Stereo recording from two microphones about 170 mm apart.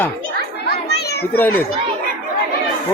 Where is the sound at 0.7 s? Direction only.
70° left (ahead or behind).